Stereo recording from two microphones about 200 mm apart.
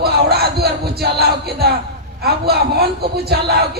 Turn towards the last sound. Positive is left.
turn(degrees=-50)  # may be behind; listen again after turning